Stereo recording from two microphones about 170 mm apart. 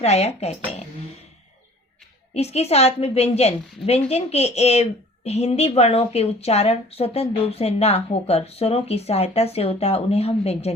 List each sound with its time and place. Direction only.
0.0 s a woman's voice: 40° left (ahead or behind)
2.3 s a woman's voice: 40° left (ahead or behind)